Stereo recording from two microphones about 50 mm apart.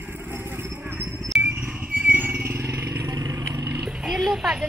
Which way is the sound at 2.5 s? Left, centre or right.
Right.